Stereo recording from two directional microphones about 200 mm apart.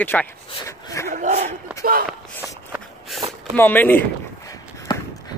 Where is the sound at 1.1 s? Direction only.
35° right (ahead or behind).